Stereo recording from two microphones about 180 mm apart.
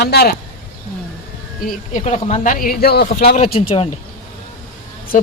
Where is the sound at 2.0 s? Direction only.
40° left (ahead or behind); by 3.1 s 60° left (ahead or behind).